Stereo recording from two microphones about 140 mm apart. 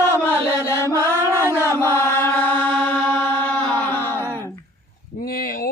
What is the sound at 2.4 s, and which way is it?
Chant, 10° left (ahead or behind).